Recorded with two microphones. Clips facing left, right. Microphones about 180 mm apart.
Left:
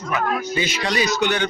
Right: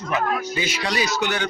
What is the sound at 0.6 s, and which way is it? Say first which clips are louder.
Speech: left 2 dB; 10° right (ahead or behind).